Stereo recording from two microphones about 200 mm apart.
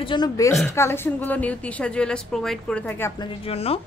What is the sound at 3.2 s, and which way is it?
Speech, 30° left (ahead or behind).